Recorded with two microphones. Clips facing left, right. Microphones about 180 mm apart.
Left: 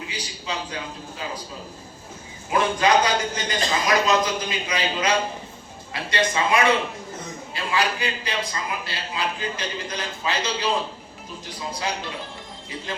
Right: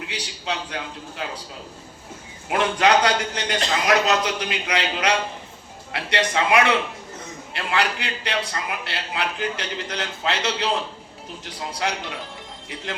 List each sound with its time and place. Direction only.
0.1 s a man's voice: 70° right (ahead or behind)
2.5 s a man's voice: 70° right (ahead or behind)